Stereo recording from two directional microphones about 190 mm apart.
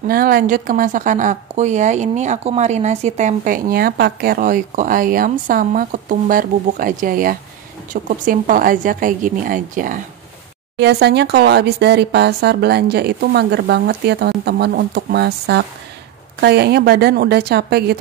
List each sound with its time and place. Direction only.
0.0 s a woman's voice: 50° right (ahead or behind)
10.8 s speech: 60° right (ahead or behind)